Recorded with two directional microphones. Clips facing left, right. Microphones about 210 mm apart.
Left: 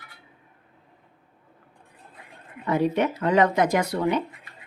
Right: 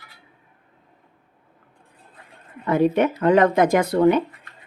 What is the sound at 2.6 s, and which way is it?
Speech, 50° right (ahead or behind).